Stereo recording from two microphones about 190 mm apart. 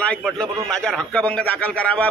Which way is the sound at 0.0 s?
5° left (ahead or behind).